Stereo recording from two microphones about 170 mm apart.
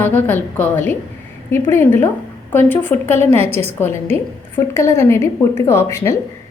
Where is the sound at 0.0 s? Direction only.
10° left (ahead or behind).